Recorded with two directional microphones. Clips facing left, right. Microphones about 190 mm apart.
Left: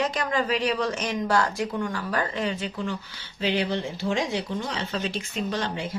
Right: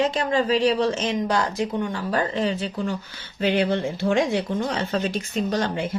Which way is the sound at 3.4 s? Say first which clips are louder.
Right 4 dB; 50° right (ahead or behind).